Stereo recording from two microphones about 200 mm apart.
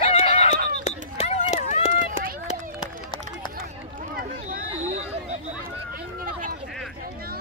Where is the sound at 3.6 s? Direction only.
45° right (ahead or behind).